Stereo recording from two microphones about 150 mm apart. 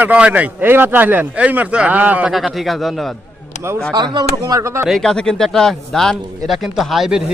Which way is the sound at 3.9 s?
25° right (ahead or behind).